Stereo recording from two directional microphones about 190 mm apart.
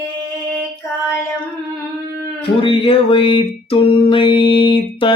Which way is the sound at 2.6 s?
30° left (ahead or behind).